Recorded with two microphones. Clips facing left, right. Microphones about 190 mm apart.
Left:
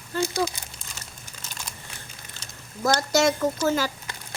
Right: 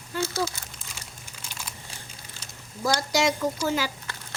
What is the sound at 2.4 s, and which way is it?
Speech, 10° right (ahead or behind).